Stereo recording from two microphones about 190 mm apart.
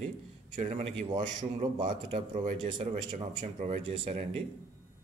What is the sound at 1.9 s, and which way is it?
A man's voice, 40° right (ahead or behind).